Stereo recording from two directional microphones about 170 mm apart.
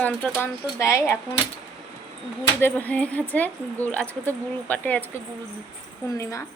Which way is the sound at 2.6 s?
10° left (ahead or behind).